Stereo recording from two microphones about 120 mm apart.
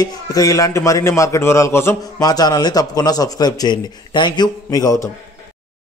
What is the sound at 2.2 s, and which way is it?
A man's voice, 35° left (ahead or behind).